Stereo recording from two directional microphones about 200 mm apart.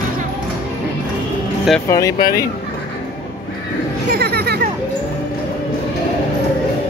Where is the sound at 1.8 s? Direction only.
15° left (ahead or behind).